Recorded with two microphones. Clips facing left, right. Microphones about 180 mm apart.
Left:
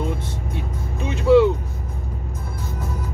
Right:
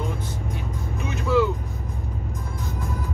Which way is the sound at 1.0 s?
25° left (ahead or behind).